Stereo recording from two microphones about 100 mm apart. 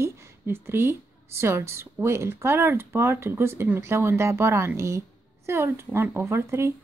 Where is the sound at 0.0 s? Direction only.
25° right (ahead or behind).